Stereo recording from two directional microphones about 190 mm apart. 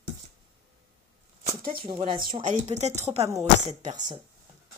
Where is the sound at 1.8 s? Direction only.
30° right (ahead or behind).